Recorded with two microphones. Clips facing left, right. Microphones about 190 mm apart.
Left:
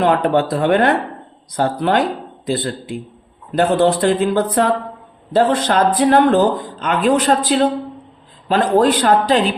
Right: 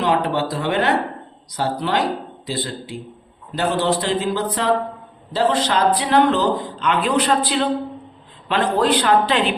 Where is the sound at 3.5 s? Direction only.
55° left (ahead or behind).